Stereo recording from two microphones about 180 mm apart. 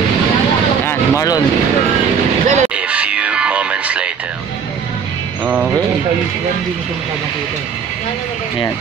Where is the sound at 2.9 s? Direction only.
5° right (ahead or behind).